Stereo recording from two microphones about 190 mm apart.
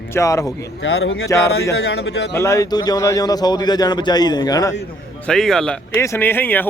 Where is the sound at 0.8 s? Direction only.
70° left (ahead or behind).